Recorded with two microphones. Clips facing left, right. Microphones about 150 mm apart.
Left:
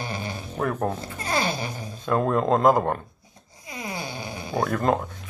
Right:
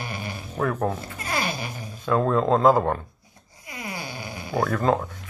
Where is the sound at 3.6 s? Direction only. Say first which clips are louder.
Left 2 dB; 25° left (ahead or behind).